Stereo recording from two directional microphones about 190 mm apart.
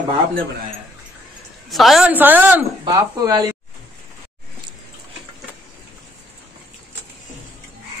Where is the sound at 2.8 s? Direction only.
20° right (ahead or behind).